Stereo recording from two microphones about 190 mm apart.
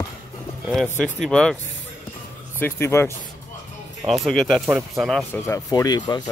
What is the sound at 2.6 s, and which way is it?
Speech, 15° left (ahead or behind).